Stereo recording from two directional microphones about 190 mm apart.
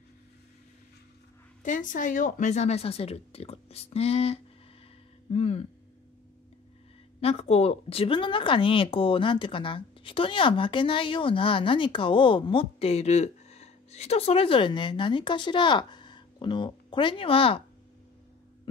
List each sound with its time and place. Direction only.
1.6 s speech: 45° left (ahead or behind)
7.2 s speech: 30° left (ahead or behind)